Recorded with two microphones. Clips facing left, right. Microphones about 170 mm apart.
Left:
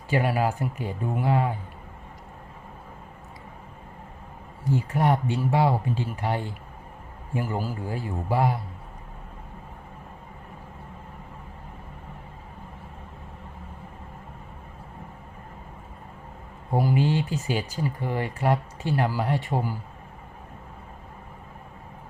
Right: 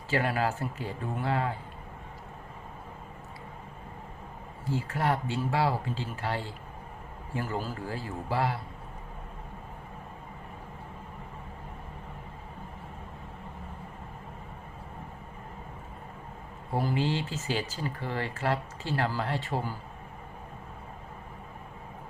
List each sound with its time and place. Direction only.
0.1 s speech: 15° left (ahead or behind)
4.6 s speech: 15° left (ahead or behind)
16.7 s speech: 15° left (ahead or behind)